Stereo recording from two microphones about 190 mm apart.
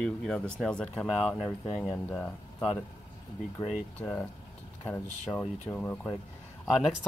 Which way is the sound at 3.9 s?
5° left (ahead or behind).